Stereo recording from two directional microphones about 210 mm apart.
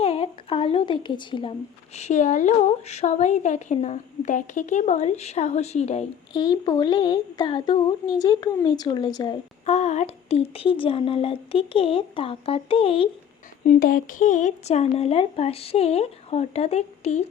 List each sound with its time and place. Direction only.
0.0 s a sound: 30° left (ahead or behind)
2.0 s speech: 35° left (ahead or behind)
6.3 s speech: 20° left (ahead or behind)
9.6 s speech: 30° left (ahead or behind)
13.7 s speech: 40° left (ahead or behind)